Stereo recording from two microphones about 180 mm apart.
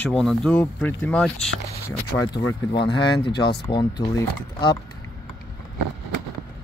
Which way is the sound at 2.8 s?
70° left (ahead or behind).